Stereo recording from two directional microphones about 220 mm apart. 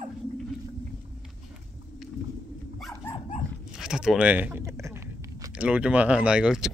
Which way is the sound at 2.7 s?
Centre (ahead or behind).